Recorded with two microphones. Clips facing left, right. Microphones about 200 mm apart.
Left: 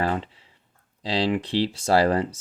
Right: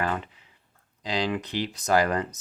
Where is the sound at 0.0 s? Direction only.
30° left (ahead or behind).